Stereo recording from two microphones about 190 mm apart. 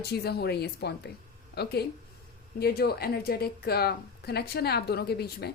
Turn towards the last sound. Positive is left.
turn(degrees=60)  # may be behind; listen again after turning